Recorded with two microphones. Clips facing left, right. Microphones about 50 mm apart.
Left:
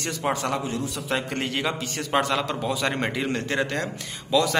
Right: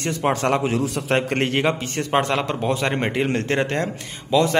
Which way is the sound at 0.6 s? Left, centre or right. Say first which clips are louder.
Right 7 dB; right.